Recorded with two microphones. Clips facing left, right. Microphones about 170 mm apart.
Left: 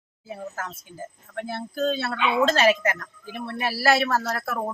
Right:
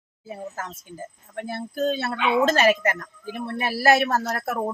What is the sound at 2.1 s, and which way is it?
Speech, 50° right (ahead or behind).